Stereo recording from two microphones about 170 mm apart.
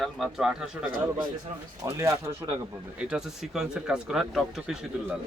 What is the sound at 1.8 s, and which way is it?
Speech, 15° right (ahead or behind).